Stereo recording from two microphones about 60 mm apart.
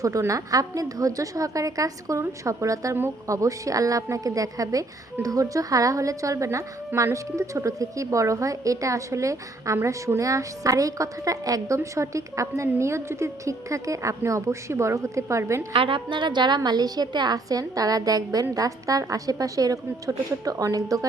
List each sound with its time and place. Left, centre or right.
0.0 s a woman's voice: right
11.8 s a woman's voice: right
16.6 s a woman's voice: right